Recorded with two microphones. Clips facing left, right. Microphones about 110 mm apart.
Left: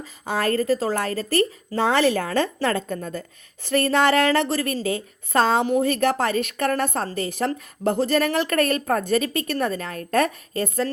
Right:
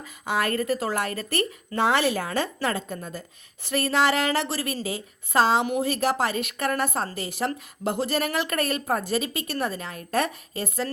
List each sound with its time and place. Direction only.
0.0 s speech: 35° left (ahead or behind); by 3.2 s 55° left (ahead or behind)
3.7 s speech: 40° left (ahead or behind)